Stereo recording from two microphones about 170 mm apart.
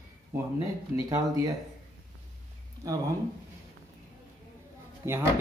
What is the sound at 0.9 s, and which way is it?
Speech, 20° right (ahead or behind).